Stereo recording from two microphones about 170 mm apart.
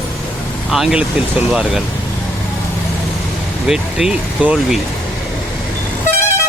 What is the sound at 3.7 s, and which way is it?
Speech, 5° right (ahead or behind).